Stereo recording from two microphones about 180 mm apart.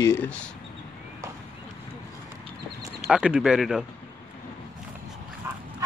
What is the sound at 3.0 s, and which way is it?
Speech, 5° right (ahead or behind).